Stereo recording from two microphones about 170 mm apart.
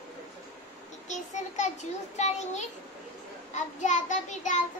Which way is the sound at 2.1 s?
40° left (ahead or behind).